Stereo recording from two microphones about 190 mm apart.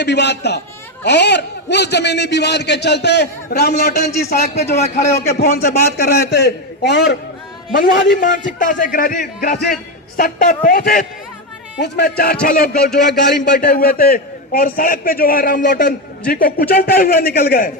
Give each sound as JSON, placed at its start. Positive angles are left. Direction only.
{"t": 0.0, "sound": "a man's voice", "side_deg": 65}
{"t": 4.4, "sound": "a man's voice", "side_deg": 35}
{"t": 5.3, "sound": "a man's voice", "side_deg": 55}
{"t": 8.1, "sound": "a man's voice", "side_deg": 45}